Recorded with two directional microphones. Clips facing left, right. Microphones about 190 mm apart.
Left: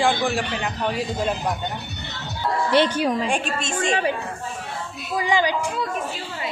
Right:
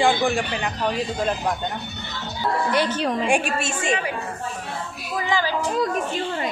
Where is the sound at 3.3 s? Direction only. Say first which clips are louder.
Right 3 dB; 10° right (ahead or behind).